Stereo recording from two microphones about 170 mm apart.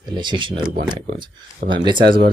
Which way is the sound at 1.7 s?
25° right (ahead or behind).